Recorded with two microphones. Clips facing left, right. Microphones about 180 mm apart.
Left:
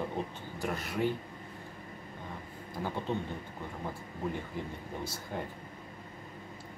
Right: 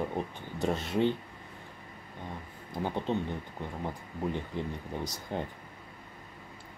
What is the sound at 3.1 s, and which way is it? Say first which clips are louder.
Speech: right 3 dB; 20° right (ahead or behind).